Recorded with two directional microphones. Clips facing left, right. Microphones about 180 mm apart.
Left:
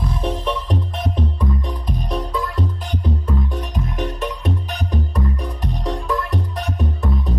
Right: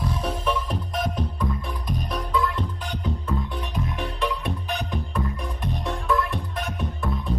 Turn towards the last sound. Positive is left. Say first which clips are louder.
# left 2 dB
turn(degrees=40)  # may be behind; listen again after turning